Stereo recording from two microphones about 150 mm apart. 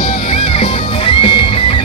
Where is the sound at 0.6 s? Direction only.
35° left (ahead or behind).